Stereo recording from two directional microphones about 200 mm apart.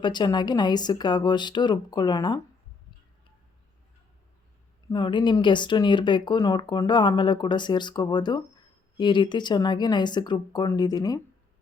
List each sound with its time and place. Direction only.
0.0 s speech: 20° left (ahead or behind)
4.9 s speech: 20° left (ahead or behind)